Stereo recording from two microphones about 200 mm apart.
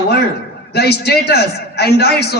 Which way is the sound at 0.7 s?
55° left (ahead or behind).